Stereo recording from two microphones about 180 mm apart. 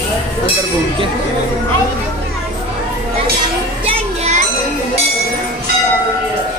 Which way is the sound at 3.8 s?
35° right (ahead or behind).